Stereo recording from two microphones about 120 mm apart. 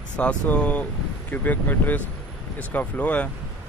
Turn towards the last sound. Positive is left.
turn(degrees=10)  # may be behind; listen again after turning